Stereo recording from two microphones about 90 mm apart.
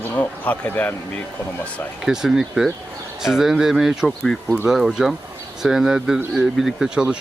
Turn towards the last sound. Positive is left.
turn(degrees=-10)  # may be behind; listen again after turning